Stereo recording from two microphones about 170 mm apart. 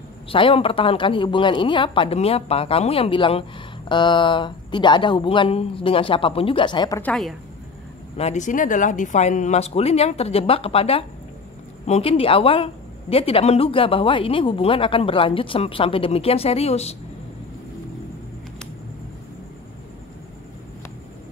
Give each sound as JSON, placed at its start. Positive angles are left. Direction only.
{"t": 0.3, "sound": "a woman's voice", "side_deg": 30}
{"t": 7.0, "sound": "a woman's voice", "side_deg": 5}
{"t": 8.2, "sound": "a woman's voice", "side_deg": 45}